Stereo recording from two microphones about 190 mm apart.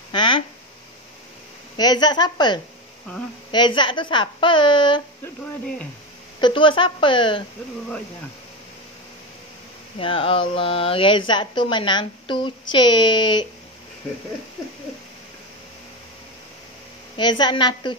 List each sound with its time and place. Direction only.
0.1 s a sound: 25° left (ahead or behind)
1.8 s speech: 20° left (ahead or behind)
6.4 s speech: 25° left (ahead or behind)
9.9 s speech: 30° left (ahead or behind)
17.2 s speech: 25° left (ahead or behind)